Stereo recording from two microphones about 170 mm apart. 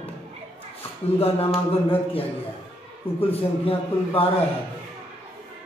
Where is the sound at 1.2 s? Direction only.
35° left (ahead or behind).